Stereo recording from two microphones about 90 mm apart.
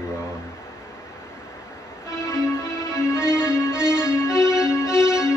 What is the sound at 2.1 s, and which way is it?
Music, 35° left (ahead or behind).